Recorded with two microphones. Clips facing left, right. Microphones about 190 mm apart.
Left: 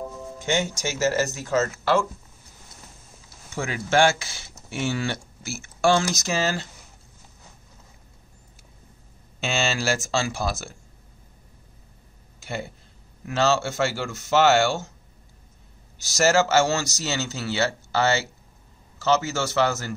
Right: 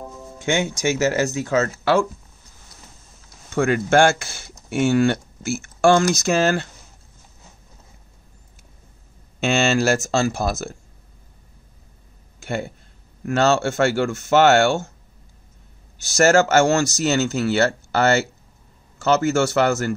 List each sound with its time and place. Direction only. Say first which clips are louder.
0.5 s speech: right 5 dB; 55° right (ahead or behind)
3.5 s speech: right 6 dB; 55° right (ahead or behind)
9.4 s speech: right 7 dB; 50° right (ahead or behind)
12.4 s speech: right 6 dB; 50° right (ahead or behind)
16.0 s speech: right 5 dB; 50° right (ahead or behind)